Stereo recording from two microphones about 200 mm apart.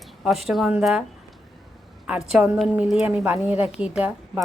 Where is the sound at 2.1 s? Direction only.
5° right (ahead or behind).